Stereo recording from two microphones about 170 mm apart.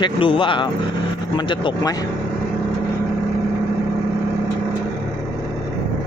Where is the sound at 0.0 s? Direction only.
30° left (ahead or behind).